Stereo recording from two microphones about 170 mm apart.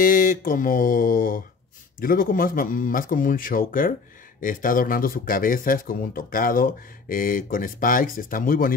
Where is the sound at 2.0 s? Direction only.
55° left (ahead or behind).